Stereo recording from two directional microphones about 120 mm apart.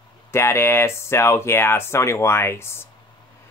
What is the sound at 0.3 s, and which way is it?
Speech, 20° left (ahead or behind).